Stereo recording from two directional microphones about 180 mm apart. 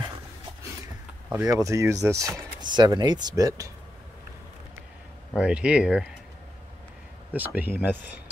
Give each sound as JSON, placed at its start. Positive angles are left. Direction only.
{"t": 1.3, "sound": "speech", "side_deg": -15}
{"t": 5.3, "sound": "speech", "side_deg": -5}
{"t": 7.3, "sound": "speech", "side_deg": -10}